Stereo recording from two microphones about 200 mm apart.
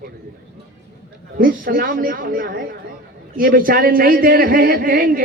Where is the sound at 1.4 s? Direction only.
45° right (ahead or behind).